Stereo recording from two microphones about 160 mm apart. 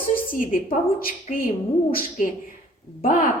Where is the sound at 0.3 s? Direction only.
60° left (ahead or behind).